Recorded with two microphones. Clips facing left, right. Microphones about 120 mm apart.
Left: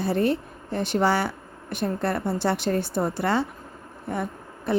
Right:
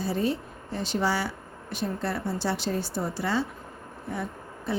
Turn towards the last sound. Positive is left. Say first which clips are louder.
# left 7 dB
turn(degrees=60)  # may be behind; listen again after turning